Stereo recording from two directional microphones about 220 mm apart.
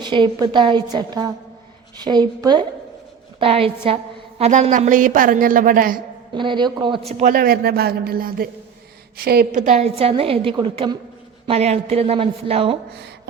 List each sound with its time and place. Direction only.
0.0 s a woman's voice: 20° right (ahead or behind); by 6.0 s 40° right (ahead or behind)
6.3 s a woman's voice: 20° right (ahead or behind)
7.1 s a man's voice: 35° right (ahead or behind)